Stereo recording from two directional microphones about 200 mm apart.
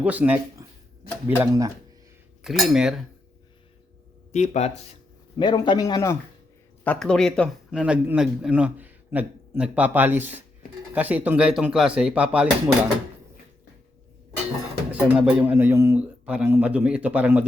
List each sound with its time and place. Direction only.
0.0 s speech: 5° right (ahead or behind)
0.6 s a sound: 15° right (ahead or behind)
1.4 s speech: 15° right (ahead or behind)
2.4 s speech: centre (ahead or behind)
4.3 s speech: 35° left (ahead or behind)
5.4 s a man's voice: 20° left (ahead or behind)
6.8 s speech: 5° left (ahead or behind)
15.0 s speech: 5° right (ahead or behind)